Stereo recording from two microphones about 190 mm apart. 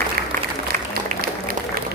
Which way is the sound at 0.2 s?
50° right (ahead or behind).